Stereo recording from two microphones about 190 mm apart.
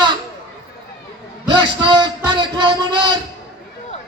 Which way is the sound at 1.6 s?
25° right (ahead or behind).